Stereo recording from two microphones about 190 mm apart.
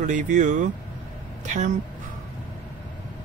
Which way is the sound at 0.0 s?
40° right (ahead or behind).